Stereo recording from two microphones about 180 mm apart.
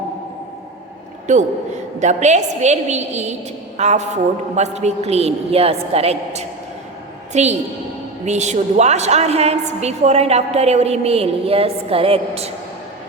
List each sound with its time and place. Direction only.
1.3 s a woman's voice: 40° right (ahead or behind)